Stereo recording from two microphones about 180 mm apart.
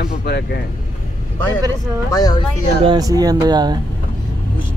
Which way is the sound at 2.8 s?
20° right (ahead or behind).